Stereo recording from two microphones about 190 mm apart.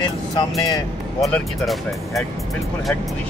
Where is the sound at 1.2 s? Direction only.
Centre (ahead or behind).